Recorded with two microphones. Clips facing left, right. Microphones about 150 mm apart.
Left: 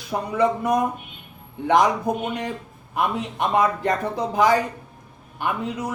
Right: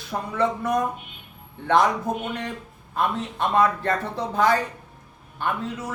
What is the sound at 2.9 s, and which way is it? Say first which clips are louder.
Speech: left 1 dB; 15° left (ahead or behind).